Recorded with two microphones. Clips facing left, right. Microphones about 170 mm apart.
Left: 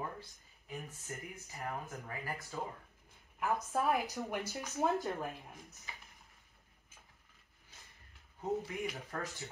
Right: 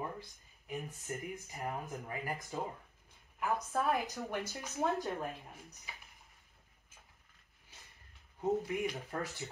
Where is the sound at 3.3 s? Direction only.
Centre (ahead or behind).